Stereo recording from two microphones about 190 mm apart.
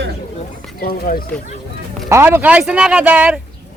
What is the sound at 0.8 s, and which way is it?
Speech, 50° left (ahead or behind).